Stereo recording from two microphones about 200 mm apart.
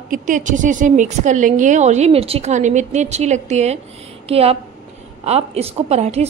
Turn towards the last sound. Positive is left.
turn(degrees=-30)  # may be behind; listen again after turning